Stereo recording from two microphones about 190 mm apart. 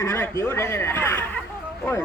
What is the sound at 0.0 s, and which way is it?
A woman's voice, 15° left (ahead or behind).